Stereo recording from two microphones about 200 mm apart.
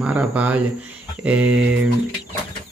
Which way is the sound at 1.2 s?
5° right (ahead or behind).